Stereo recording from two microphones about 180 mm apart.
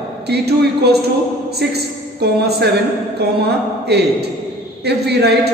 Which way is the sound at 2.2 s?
65° right (ahead or behind).